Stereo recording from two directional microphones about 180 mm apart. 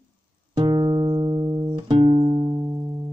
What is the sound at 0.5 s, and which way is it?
Music, 25° right (ahead or behind).